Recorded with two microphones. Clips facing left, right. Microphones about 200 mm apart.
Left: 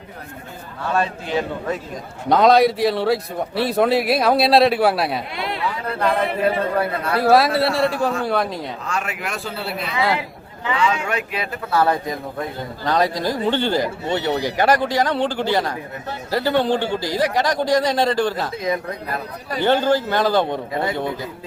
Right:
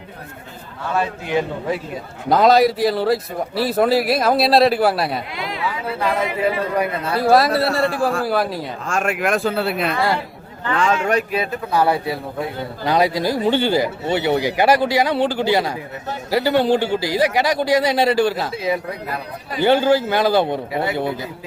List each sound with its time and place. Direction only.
0.9 s a man's voice: 15° right (ahead or behind)
2.3 s a man's voice: centre (ahead or behind); by 7.2 s 20° right (ahead or behind)
7.2 s a man's voice: centre (ahead or behind)
8.9 s speech: 50° right (ahead or behind)
10.0 s chatter: 5° left (ahead or behind)
10.8 s speech: 45° right (ahead or behind)
11.7 s a man's voice: 10° right (ahead or behind)